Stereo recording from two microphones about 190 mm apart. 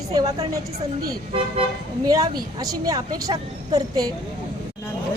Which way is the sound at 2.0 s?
20° right (ahead or behind).